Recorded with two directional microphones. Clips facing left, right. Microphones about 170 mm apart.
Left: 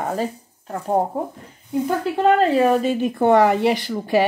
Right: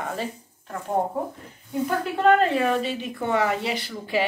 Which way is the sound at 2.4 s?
35° left (ahead or behind).